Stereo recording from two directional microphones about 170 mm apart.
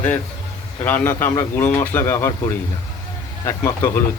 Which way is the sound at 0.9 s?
10° left (ahead or behind).